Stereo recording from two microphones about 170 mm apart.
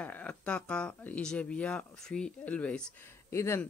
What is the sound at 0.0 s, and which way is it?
Speech, 10° left (ahead or behind).